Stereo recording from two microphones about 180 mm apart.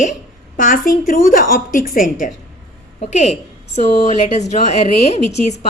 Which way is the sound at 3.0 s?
40° left (ahead or behind).